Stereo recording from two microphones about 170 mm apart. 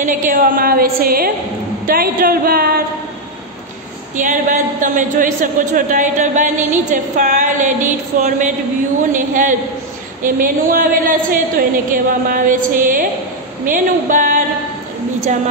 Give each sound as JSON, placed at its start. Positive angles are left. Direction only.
{"t": 0.0, "sound": "a woman's voice", "side_deg": -55}
{"t": 4.2, "sound": "a man's voice", "side_deg": -50}